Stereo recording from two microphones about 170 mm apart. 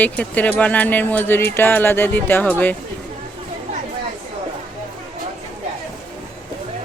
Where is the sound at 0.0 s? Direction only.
10° left (ahead or behind).